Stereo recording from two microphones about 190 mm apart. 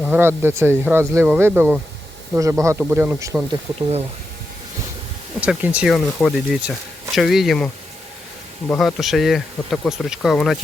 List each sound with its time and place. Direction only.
0.0 s speech: 10° right (ahead or behind)
3.8 s speech: 35° right (ahead or behind)
5.4 s speech: 5° right (ahead or behind)